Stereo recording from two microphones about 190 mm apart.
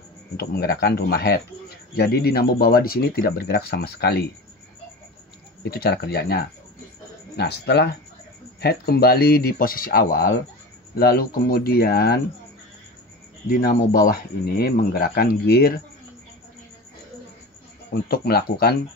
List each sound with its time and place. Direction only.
0.4 s speech: 55° left (ahead or behind)
5.6 s speech: 55° left (ahead or behind)
13.5 s speech: 50° left (ahead or behind)
17.9 s speech: 55° left (ahead or behind)